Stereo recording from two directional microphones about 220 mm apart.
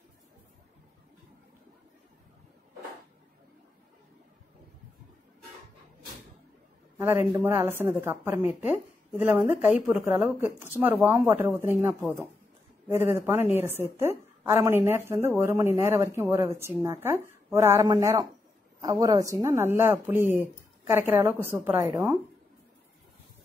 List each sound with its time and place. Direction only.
7.0 s a woman's voice: 10° right (ahead or behind)
8.4 s a woman's voice: 25° left (ahead or behind)
8.6 s a woman's voice: 10° right (ahead or behind)